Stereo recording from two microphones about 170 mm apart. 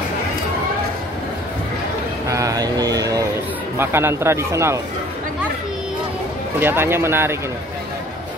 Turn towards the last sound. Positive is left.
turn(degrees=-15)  # may be behind; listen again after turning